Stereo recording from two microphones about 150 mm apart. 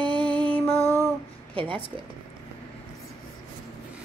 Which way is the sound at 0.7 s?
20° right (ahead or behind).